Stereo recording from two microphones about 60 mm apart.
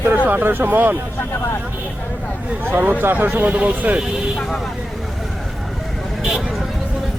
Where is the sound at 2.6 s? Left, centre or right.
Right.